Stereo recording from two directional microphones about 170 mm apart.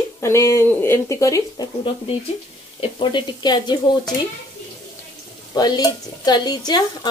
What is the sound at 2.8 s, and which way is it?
Stir, 30° left (ahead or behind).